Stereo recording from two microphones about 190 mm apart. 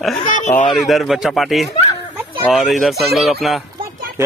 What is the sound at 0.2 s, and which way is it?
Speech, 40° left (ahead or behind).